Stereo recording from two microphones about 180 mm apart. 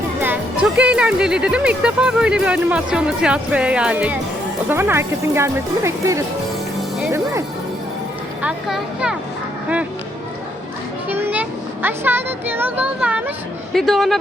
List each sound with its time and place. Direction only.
0.2 s speech: 10° right (ahead or behind)
7.0 s music: 15° right (ahead or behind)
8.4 s speech: 5° right (ahead or behind)
11.1 s speech: 10° right (ahead or behind)